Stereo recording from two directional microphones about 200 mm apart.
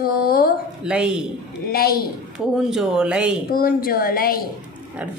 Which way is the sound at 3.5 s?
45° left (ahead or behind).